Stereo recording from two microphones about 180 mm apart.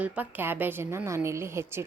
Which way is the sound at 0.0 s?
10° right (ahead or behind).